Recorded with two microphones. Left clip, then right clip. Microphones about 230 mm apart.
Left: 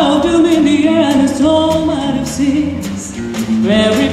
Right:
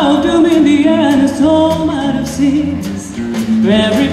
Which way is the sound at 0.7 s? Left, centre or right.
Left.